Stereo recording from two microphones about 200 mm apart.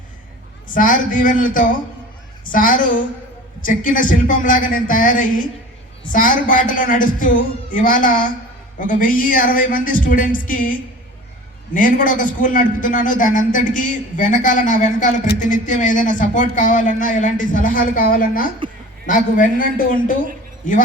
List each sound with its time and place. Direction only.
0.7 s a man's voice: 40° left (ahead or behind)